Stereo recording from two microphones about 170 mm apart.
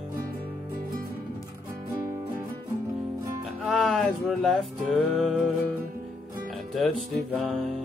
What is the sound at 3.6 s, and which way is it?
Music, centre (ahead or behind).